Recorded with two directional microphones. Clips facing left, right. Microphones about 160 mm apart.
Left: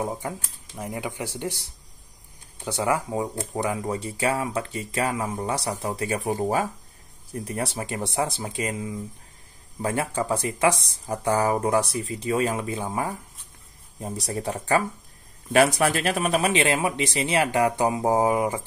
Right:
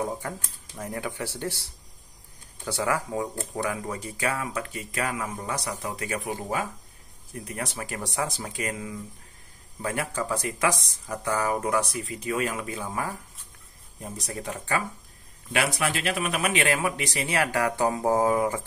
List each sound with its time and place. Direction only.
0.2 s speech: 20° left (ahead or behind)